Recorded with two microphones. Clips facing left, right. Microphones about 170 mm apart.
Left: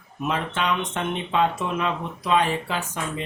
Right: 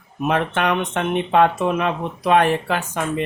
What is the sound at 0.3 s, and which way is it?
Speech, 60° right (ahead or behind).